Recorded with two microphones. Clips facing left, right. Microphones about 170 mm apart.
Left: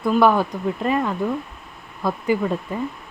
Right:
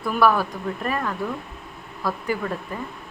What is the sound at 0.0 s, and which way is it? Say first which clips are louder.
Speech: left 3 dB; 20° left (ahead or behind).